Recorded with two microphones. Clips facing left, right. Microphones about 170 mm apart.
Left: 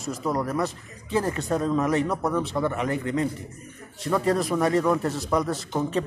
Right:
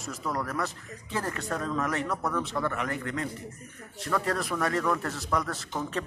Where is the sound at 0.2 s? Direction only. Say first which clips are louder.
Left 5 dB; 20° left (ahead or behind).